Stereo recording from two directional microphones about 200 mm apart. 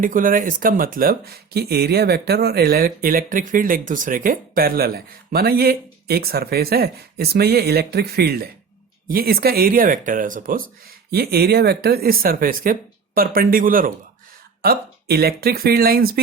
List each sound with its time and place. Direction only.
0.0 s speech: 45° right (ahead or behind)